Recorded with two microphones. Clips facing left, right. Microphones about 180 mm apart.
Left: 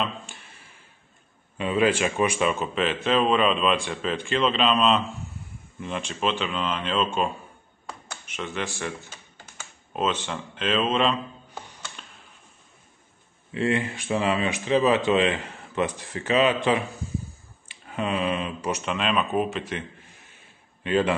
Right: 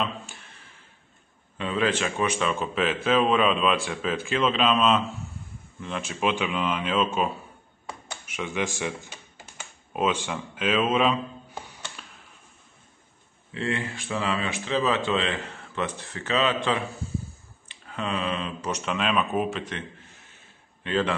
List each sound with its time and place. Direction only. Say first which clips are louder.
1.6 s a man's voice: left 3 dB; 10° left (ahead or behind); by 7.1 s 10° right (ahead or behind)
8.1 s computer keyboard: right 1 dB; 10° right (ahead or behind)
13.5 s speech: left 5 dB; 15° left (ahead or behind)
20.8 s speech: left 3 dB; 10° left (ahead or behind)